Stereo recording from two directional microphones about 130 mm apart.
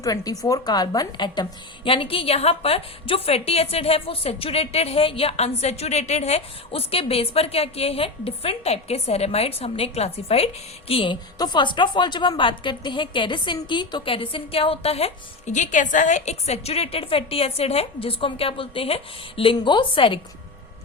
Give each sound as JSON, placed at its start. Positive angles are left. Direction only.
{"t": 0.0, "sound": "a woman's voice", "side_deg": 30}